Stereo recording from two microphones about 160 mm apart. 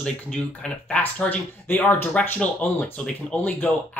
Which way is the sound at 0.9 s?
10° left (ahead or behind).